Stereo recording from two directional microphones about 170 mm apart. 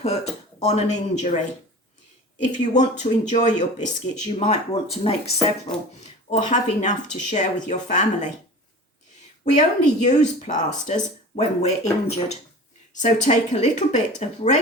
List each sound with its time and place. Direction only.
0.0 s speech: 40° left (ahead or behind)
2.5 s speech: 45° left (ahead or behind)
9.4 s speech: 45° left (ahead or behind)